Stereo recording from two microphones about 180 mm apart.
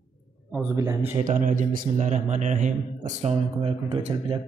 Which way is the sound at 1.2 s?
45° right (ahead or behind).